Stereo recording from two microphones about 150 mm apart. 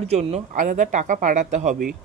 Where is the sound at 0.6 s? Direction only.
60° right (ahead or behind).